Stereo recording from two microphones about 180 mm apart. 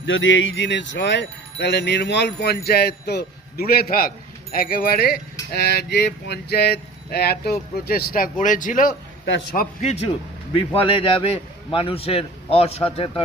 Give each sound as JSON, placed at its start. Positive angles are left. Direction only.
{"t": 0.0, "sound": "speech", "side_deg": 90}
{"t": 9.6, "sound": "a man's voice", "side_deg": 40}